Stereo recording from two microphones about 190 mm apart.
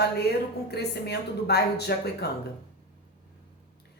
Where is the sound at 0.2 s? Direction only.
60° left (ahead or behind).